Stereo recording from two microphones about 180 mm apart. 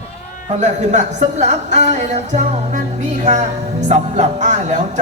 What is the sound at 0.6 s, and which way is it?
A man's voice, 40° right (ahead or behind).